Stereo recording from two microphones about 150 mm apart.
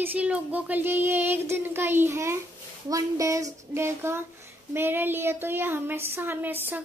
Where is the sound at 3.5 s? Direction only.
15° right (ahead or behind).